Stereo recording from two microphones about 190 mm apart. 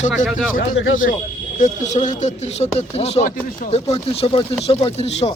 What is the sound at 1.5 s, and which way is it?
Speech, 40° left (ahead or behind).